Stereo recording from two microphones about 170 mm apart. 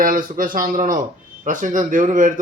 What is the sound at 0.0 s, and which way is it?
A man's voice, 55° right (ahead or behind).